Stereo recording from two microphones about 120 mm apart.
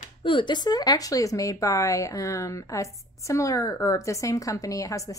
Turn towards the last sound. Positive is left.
turn(degrees=30)  # may be behind; listen again after turning